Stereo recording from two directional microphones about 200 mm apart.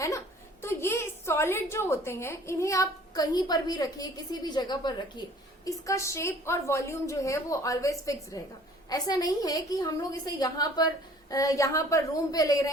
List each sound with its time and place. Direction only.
0.6 s a woman's voice: 10° left (ahead or behind)